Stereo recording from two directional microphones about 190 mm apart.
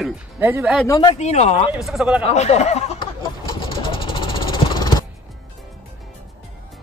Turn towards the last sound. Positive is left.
turn(degrees=20)  # may be behind; listen again after turning